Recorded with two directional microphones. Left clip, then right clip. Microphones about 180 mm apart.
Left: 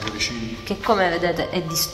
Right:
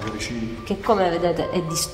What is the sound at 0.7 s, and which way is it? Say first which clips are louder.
A man's voice: even; 5° left (ahead or behind).